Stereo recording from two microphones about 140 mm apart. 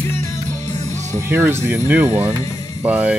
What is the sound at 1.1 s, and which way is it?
Speech, 15° right (ahead or behind).